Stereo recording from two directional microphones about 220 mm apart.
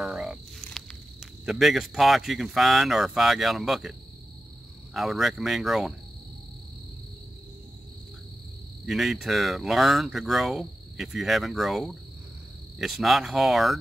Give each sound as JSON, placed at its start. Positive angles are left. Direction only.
{"t": 0.0, "sound": "speech", "side_deg": -5}
{"t": 4.9, "sound": "speech", "side_deg": 0}
{"t": 8.8, "sound": "speech", "side_deg": 0}